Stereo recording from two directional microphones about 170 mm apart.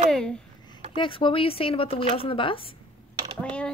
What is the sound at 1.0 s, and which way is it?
Speech, 30° left (ahead or behind).